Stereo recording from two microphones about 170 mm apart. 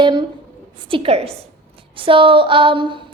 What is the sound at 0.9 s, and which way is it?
A woman's voice, 35° right (ahead or behind).